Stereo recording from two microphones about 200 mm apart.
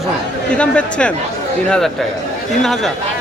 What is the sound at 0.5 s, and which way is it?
Speech, 5° left (ahead or behind).